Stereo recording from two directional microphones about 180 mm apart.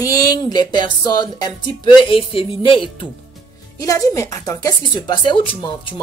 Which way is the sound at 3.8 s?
20° left (ahead or behind).